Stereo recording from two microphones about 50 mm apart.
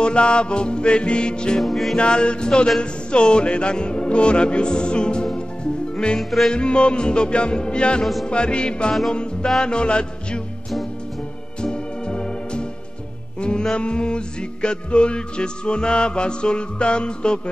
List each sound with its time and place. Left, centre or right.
0.0 s music: centre
1.6 s music: centre
2.0 s music: centre
8.0 s music: centre
8.3 s music: centre
11.6 s organ: centre
13.4 s music: centre